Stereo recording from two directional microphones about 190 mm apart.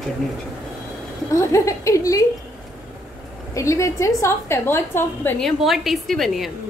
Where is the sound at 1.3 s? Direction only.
15° left (ahead or behind).